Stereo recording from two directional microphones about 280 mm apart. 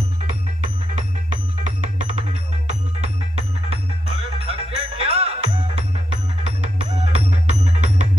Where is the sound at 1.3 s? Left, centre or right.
Right.